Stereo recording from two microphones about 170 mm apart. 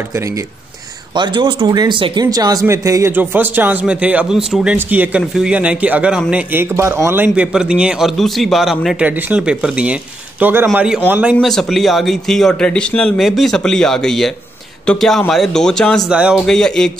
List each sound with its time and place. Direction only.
0.1 s a man's voice: 20° right (ahead or behind)
10.7 s speech: centre (ahead or behind)
11.3 s a man's voice: centre (ahead or behind)